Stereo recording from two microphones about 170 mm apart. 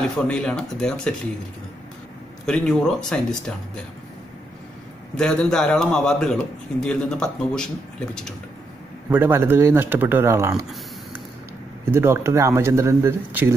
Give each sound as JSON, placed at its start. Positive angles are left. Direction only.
{"t": 0.3, "sound": "a man's voice", "side_deg": 5}
{"t": 2.4, "sound": "a man's voice", "side_deg": 5}
{"t": 5.1, "sound": "a man's voice", "side_deg": 5}
{"t": 9.1, "sound": "speech", "side_deg": -15}
{"t": 11.9, "sound": "speech", "side_deg": -15}